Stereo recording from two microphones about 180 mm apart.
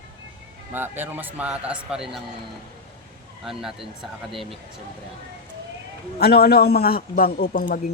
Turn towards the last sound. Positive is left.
turn(degrees=55)  # may be behind; listen again after turning